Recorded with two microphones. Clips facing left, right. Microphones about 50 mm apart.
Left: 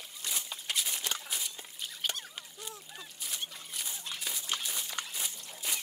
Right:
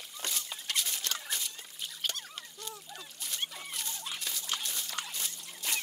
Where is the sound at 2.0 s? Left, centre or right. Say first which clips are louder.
Left 1 dB; centre.